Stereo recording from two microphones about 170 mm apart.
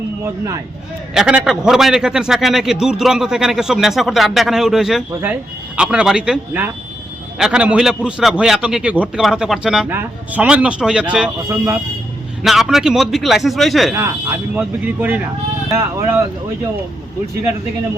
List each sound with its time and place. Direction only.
1.1 s a man's voice: 5° right (ahead or behind)
12.4 s a man's voice: centre (ahead or behind)
13.9 s speech: 15° right (ahead or behind)